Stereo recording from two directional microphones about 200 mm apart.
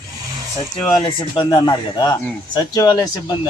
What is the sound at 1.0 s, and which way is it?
Speech, 20° left (ahead or behind).